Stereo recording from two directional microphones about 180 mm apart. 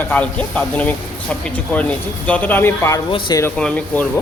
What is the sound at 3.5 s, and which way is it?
Speech, 5° left (ahead or behind).